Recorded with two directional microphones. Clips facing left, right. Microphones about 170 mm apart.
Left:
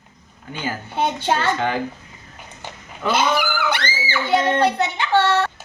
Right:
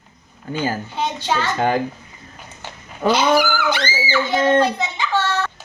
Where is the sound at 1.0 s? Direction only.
55° left (ahead or behind).